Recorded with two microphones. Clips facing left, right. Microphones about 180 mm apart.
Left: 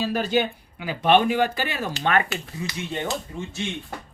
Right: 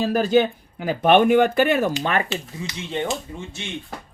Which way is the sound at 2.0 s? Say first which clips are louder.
Even; 25° right (ahead or behind).